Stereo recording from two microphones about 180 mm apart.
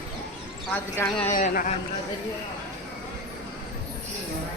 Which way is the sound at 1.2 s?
50° left (ahead or behind).